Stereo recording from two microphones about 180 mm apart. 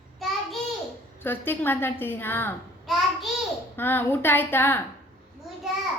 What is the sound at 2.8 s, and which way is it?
Child singing, centre (ahead or behind).